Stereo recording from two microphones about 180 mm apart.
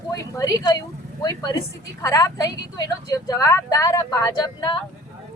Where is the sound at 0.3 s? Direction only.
20° left (ahead or behind).